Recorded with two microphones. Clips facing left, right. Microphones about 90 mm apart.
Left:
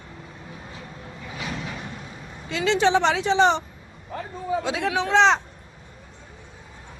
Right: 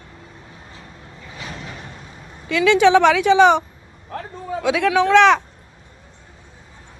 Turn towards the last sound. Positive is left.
turn(degrees=-65)  # may be behind; listen again after turning